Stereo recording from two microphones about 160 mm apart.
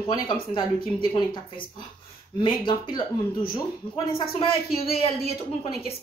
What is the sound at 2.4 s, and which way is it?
A woman's voice, 30° left (ahead or behind).